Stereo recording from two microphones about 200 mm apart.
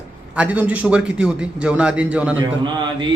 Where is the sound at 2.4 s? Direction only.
25° right (ahead or behind).